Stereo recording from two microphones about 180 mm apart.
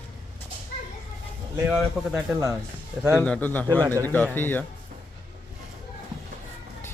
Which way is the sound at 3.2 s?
10° left (ahead or behind).